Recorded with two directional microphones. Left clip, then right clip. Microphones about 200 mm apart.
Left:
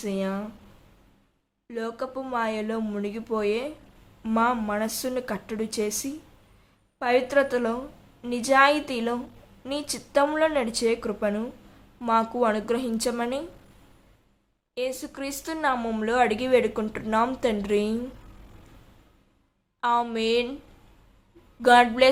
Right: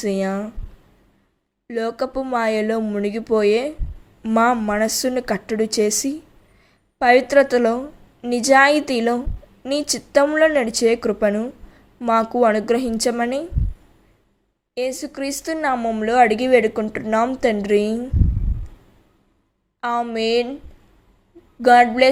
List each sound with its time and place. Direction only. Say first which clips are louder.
0.0 s speech: right 7 dB; 25° right (ahead or behind)
1.6 s speech: right 8 dB; 25° right (ahead or behind)
14.8 s a woman's voice: right 6 dB; 20° right (ahead or behind)
19.8 s a woman's voice: right 3 dB; 15° right (ahead or behind)
21.6 s a woman's voice: right 5 dB; 15° right (ahead or behind)